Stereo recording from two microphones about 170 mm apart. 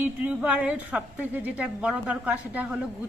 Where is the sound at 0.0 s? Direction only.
10° right (ahead or behind).